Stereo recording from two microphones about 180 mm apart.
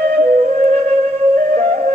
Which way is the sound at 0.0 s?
45° right (ahead or behind).